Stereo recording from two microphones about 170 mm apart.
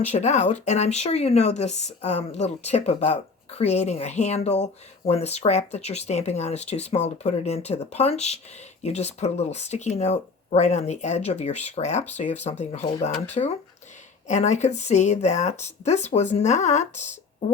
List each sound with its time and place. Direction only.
0.0 s speech: 40° left (ahead or behind)